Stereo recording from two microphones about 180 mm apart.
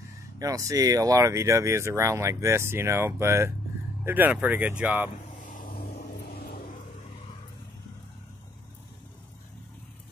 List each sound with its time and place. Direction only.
0.4 s speech: 20° right (ahead or behind)
5.4 s vehicle: 50° left (ahead or behind)